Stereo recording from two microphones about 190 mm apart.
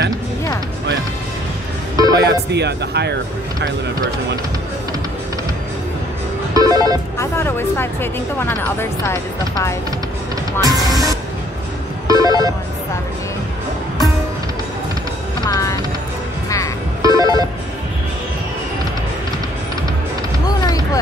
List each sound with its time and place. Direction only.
2.1 s speech: 60° right (ahead or behind)
6.5 s telephone: 20° right (ahead or behind)
7.2 s speech: 15° left (ahead or behind)
10.6 s music: 20° right (ahead or behind)
12.1 s telephone bell ringing: 20° right (ahead or behind)
15.4 s music: 20° left (ahead or behind)
17.0 s telephone: 20° right (ahead or behind)
20.4 s a sound: 20° left (ahead or behind)